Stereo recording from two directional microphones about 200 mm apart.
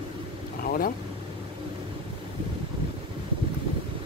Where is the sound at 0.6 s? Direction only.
45° left (ahead or behind).